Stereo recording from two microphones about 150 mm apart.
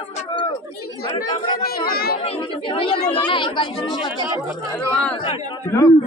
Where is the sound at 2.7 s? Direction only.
35° left (ahead or behind).